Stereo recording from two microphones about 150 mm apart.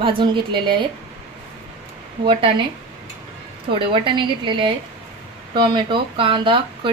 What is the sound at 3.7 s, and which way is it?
A woman's voice, 35° right (ahead or behind).